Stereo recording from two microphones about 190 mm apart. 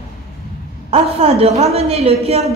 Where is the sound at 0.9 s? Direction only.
30° right (ahead or behind).